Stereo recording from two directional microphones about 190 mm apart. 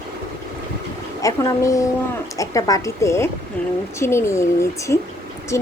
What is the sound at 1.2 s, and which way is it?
Speech, 15° left (ahead or behind).